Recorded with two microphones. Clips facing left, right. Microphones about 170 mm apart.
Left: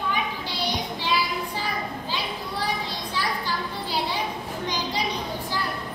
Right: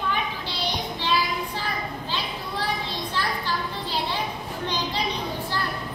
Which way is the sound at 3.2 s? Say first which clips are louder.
Even; 10° left (ahead or behind).